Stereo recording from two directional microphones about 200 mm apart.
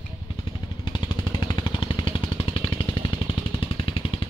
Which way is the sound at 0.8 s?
20° left (ahead or behind).